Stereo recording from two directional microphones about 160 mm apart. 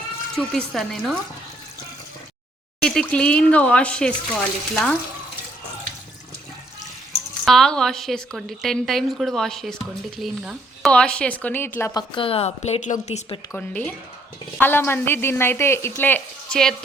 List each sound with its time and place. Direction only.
0.3 s a woman's voice: 5° left (ahead or behind)
2.8 s speech: 5° left (ahead or behind)
7.4 s a woman's voice: centre (ahead or behind)
12.1 s a woman's voice: 35° left (ahead or behind)
13.5 s speech: 10° left (ahead or behind)